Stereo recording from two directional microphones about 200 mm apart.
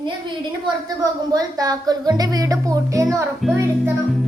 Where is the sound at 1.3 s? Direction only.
20° right (ahead or behind).